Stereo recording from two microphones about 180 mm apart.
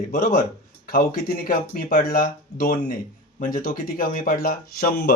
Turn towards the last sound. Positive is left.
turn(degrees=55)  # may be behind; listen again after turning